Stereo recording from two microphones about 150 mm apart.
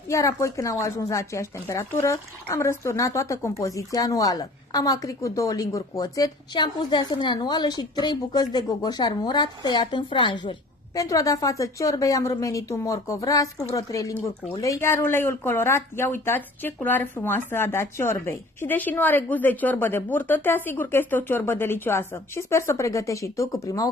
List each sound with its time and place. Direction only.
0.1 s speech: 20° left (ahead or behind)